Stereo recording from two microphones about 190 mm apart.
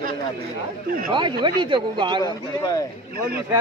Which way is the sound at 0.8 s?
50° right (ahead or behind).